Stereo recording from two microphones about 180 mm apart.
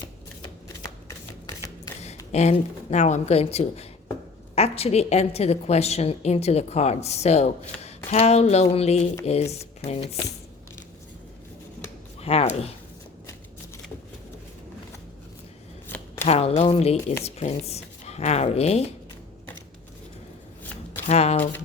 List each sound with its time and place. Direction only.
1.0 s a sound: 20° left (ahead or behind)
2.3 s a woman's voice: 40° left (ahead or behind)
12.2 s speech: 35° left (ahead or behind)
16.2 s speech: 35° left (ahead or behind)
21.1 s a woman's voice: 35° left (ahead or behind)